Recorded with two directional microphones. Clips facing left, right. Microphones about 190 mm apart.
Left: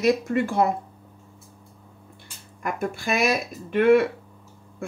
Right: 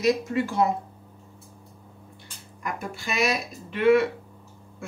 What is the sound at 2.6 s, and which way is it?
Speech, 55° left (ahead or behind).